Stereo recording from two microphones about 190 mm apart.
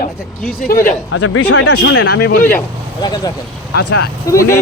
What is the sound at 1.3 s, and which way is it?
Speech, 85° left.